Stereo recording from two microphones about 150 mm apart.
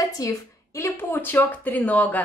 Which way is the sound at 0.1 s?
20° left (ahead or behind).